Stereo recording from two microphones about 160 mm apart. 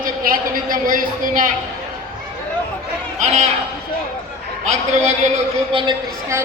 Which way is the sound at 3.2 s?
50° right (ahead or behind).